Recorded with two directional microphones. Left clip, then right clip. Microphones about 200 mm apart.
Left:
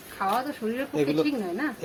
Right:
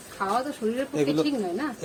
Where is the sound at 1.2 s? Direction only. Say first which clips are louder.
Even; 20° right (ahead or behind).